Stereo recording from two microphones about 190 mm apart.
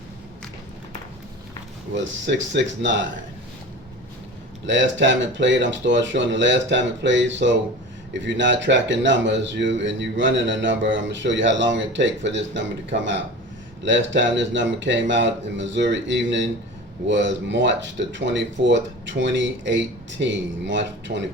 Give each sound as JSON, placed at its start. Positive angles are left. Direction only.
{"t": 2.2, "sound": "speech", "side_deg": -70}
{"t": 4.6, "sound": "speech", "side_deg": -75}